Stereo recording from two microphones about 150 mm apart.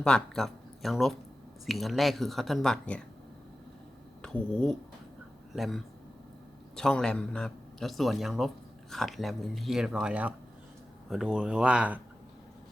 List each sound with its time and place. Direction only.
0.0 s speech: 5° left (ahead or behind)
4.2 s speech: 5° left (ahead or behind)